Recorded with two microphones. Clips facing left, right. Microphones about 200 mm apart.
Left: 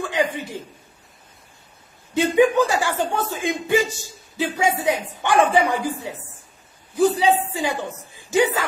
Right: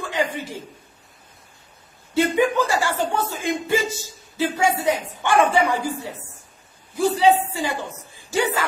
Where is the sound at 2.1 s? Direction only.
15° left (ahead or behind).